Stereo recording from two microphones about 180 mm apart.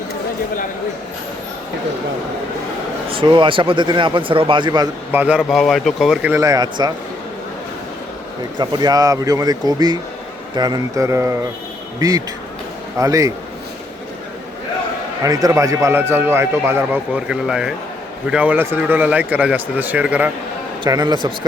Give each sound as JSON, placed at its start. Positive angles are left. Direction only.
{"t": 3.1, "sound": "speech", "side_deg": -25}
{"t": 5.1, "sound": "speech", "side_deg": -10}
{"t": 6.3, "sound": "speech", "side_deg": -20}
{"t": 8.5, "sound": "a man's voice", "side_deg": -20}
{"t": 15.2, "sound": "a man's voice", "side_deg": -20}
{"t": 20.8, "sound": "speech", "side_deg": -25}